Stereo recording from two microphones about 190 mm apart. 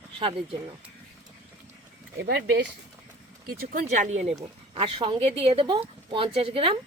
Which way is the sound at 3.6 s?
40° right (ahead or behind).